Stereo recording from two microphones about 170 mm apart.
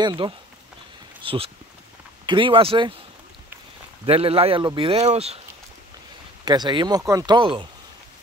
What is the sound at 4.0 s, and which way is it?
Speech, 35° right (ahead or behind).